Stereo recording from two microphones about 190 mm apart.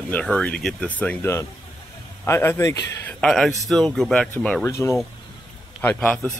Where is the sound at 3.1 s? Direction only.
5° left (ahead or behind).